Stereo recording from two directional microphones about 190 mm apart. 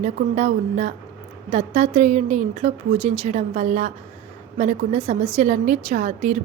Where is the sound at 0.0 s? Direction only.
40° right (ahead or behind).